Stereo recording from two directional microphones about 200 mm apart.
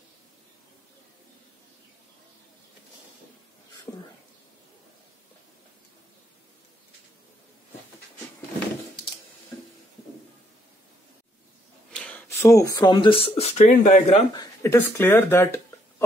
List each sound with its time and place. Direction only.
11.9 s speech: 5° left (ahead or behind); by 14.2 s 35° left (ahead or behind)
14.3 s speech: 15° left (ahead or behind)